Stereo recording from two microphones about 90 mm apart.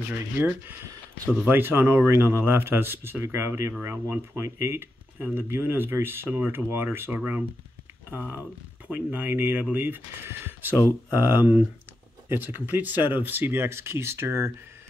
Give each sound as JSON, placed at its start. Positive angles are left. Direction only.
{"t": 0.1, "sound": "speech", "side_deg": -20}